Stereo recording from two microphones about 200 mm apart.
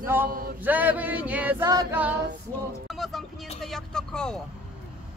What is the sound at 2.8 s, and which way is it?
Speech, centre (ahead or behind).